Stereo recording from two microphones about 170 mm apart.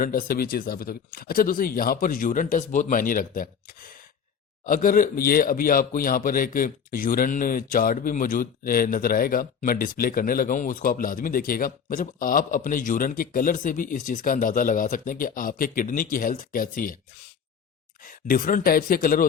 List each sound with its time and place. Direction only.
0.0 s speech: 55° left (ahead or behind)
18.0 s speech: 55° left (ahead or behind)